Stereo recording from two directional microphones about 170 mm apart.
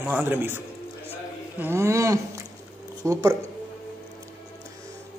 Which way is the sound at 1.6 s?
15° right (ahead or behind).